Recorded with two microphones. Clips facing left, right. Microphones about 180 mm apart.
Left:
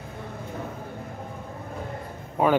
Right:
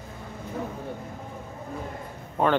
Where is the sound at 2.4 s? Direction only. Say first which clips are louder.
Left 2 dB; 10° left (ahead or behind).